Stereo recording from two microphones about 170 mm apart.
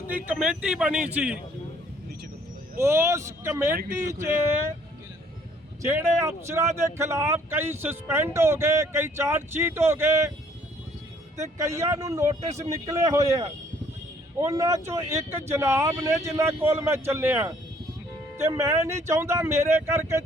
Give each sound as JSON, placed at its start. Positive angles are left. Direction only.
{"t": 0.1, "sound": "speech", "side_deg": -10}
{"t": 2.7, "sound": "speech", "side_deg": -15}
{"t": 5.8, "sound": "speech", "side_deg": -15}
{"t": 11.5, "sound": "a man's voice", "side_deg": -20}
{"t": 12.4, "sound": "speech", "side_deg": -40}
{"t": 12.8, "sound": "a man's voice", "side_deg": -20}